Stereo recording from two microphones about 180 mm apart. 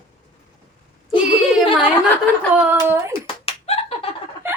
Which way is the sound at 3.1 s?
35° left (ahead or behind).